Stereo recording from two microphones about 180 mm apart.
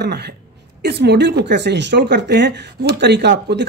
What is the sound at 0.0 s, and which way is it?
Speech, 65° right (ahead or behind).